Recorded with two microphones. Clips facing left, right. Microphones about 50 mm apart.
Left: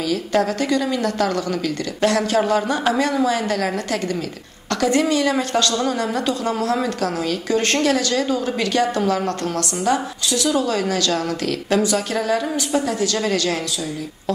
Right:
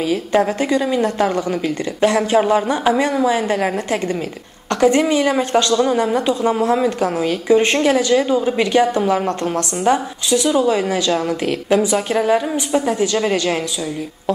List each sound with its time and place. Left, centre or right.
0.0 s a woman's voice: right